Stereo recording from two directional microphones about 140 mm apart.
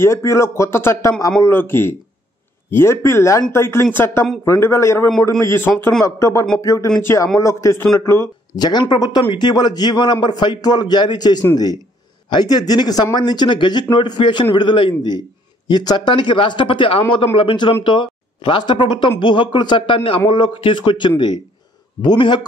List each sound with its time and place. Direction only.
0.0 s speech: 20° left (ahead or behind)